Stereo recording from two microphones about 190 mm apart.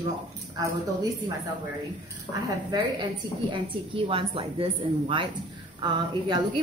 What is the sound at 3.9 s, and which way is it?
A woman's voice, 30° right (ahead or behind).